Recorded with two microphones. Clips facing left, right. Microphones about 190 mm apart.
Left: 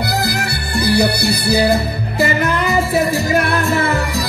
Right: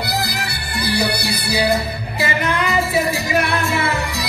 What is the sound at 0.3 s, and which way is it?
Music, 50° left (ahead or behind).